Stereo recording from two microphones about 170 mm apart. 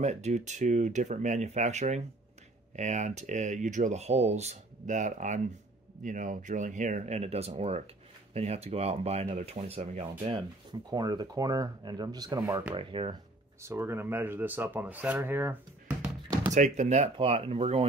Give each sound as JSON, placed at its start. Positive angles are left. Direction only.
{"t": 0.0, "sound": "speech", "side_deg": -40}
{"t": 10.7, "sound": "speech", "side_deg": -25}
{"t": 12.7, "sound": "speech", "side_deg": -30}
{"t": 13.6, "sound": "speech", "side_deg": -15}
{"t": 16.5, "sound": "speech", "side_deg": -45}